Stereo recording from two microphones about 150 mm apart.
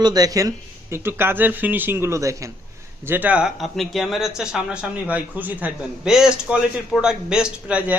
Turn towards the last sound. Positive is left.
turn(degrees=-10)  # may be behind; listen again after turning